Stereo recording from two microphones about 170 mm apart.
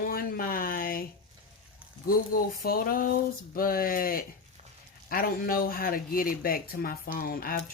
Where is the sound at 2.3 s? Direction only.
60° left (ahead or behind).